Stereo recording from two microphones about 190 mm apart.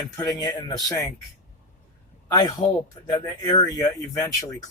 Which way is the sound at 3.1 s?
20° left (ahead or behind).